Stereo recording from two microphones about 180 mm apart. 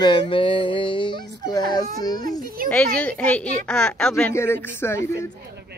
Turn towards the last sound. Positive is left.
turn(degrees=15)  # may be behind; listen again after turning